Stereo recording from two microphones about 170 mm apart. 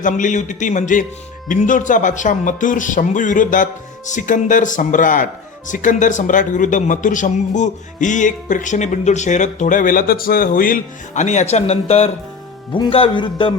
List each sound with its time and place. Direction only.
0.0 s speech: 50° left (ahead or behind); by 13.5 s 30° left (ahead or behind)